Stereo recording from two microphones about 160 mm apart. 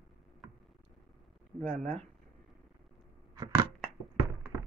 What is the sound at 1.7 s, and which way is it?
Speech, 45° right (ahead or behind).